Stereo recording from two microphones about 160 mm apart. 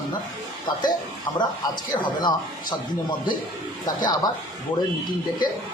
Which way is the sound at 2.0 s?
25° left (ahead or behind).